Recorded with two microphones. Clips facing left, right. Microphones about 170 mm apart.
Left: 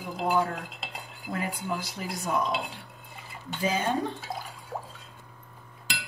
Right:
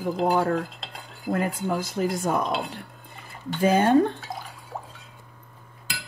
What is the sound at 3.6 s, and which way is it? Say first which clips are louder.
Speech: right 9 dB; 55° right (ahead or behind).